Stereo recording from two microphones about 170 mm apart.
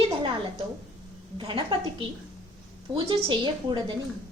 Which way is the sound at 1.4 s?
30° right (ahead or behind).